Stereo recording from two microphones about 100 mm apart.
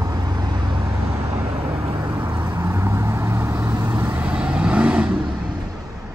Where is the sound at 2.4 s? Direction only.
20° right (ahead or behind).